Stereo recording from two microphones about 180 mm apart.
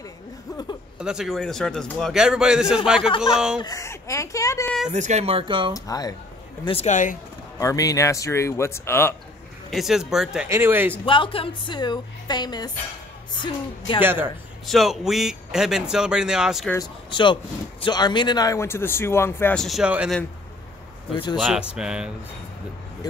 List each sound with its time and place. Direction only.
0.9 s speech: 5° right (ahead or behind)
3.6 s speech: 15° left (ahead or behind)
4.8 s speech: 40° right (ahead or behind)
5.7 s a woman's voice: 20° left (ahead or behind)
6.6 s speech: 35° left (ahead or behind)
7.5 s speech: 20° left (ahead or behind)
9.7 s speech: centre (ahead or behind)
11.1 s a woman's voice: 30° left (ahead or behind)
14.0 s speech: 10° right (ahead or behind)
14.7 s speech: centre (ahead or behind)
16.7 s speech: 25° left (ahead or behind); by 20.2 s 5° right (ahead or behind)
21.1 s a woman's voice: 25° left (ahead or behind)
21.4 s speech: centre (ahead or behind)